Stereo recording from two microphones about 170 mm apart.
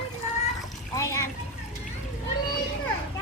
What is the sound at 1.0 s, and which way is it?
Splash, 15° left (ahead or behind).